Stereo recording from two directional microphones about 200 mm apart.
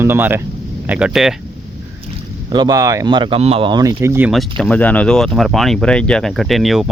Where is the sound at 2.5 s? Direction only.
20° right (ahead or behind).